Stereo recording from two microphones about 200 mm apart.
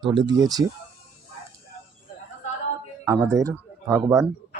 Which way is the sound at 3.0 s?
15° right (ahead or behind).